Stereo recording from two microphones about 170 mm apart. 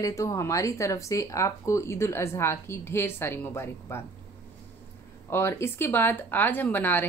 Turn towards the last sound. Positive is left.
turn(degrees=10)  # may be behind; listen again after turning